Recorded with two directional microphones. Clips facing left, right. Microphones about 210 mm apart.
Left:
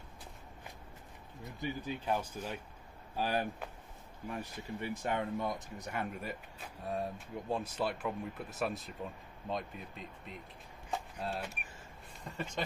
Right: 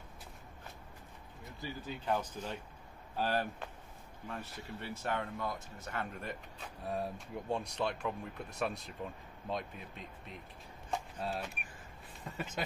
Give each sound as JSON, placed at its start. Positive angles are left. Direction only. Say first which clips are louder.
{"t": 1.6, "sound": "speech", "louder": "left 4 dB", "side_deg": 10}
{"t": 6.9, "sound": "speech", "louder": "even", "side_deg": 0}